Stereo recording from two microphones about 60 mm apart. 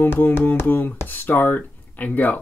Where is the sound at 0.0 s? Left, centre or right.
Left.